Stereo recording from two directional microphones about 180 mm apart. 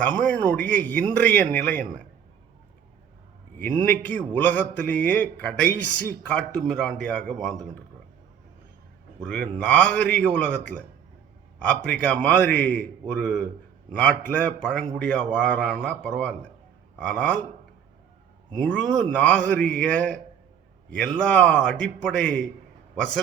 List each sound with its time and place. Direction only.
0.0 s a man's voice: 10° left (ahead or behind)
3.6 s a man's voice: 10° left (ahead or behind)
9.2 s a man's voice: 5° left (ahead or behind)
11.6 s a man's voice: 5° left (ahead or behind)
18.5 s a man's voice: 5° left (ahead or behind)